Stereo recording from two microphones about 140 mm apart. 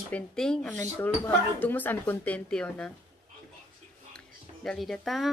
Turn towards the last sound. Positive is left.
turn(degrees=0)  # may be behind; listen again after turning